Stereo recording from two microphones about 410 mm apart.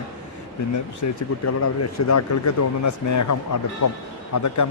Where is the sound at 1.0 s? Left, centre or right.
Left.